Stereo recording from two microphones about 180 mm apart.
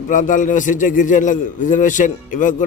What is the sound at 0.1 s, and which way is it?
A man's voice, 45° left (ahead or behind).